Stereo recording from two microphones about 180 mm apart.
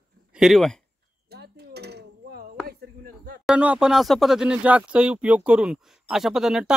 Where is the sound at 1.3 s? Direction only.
65° right (ahead or behind).